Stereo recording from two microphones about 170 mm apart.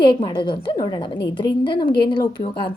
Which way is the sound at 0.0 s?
25° left (ahead or behind).